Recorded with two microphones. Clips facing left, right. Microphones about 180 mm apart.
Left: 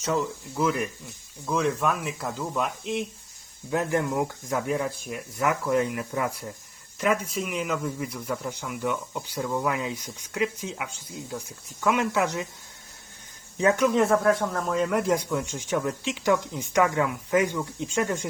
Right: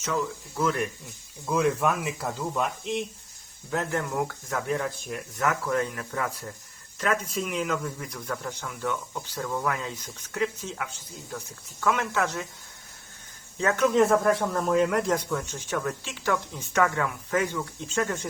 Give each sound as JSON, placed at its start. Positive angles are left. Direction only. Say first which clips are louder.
{"t": 0.5, "sound": "speech", "louder": "left 1 dB", "side_deg": 5}
{"t": 1.5, "sound": "speech", "louder": "right 1 dB", "side_deg": -5}
{"t": 3.7, "sound": "speech", "louder": "left 3 dB", "side_deg": 15}
{"t": 13.6, "sound": "speech", "louder": "left 4 dB", "side_deg": 15}
{"t": 13.8, "sound": "speech", "louder": "right 2 dB", "side_deg": 0}